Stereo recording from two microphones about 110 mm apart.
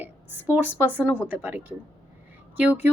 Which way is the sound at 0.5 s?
15° right (ahead or behind).